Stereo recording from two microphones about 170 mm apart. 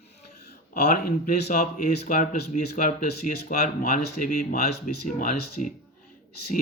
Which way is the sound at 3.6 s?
50° left (ahead or behind).